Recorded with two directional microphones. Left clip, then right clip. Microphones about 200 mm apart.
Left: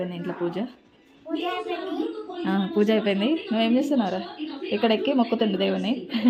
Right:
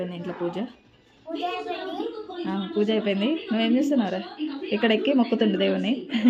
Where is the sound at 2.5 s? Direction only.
15° left (ahead or behind).